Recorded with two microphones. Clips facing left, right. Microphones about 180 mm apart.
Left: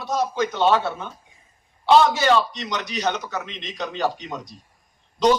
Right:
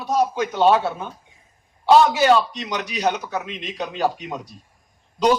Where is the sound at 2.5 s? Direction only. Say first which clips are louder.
Right 1 dB; 10° right (ahead or behind).